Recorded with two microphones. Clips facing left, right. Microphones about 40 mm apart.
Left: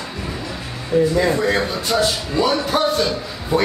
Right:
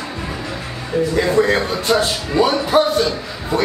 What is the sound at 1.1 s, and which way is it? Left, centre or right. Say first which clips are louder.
Speech: right 2 dB; right.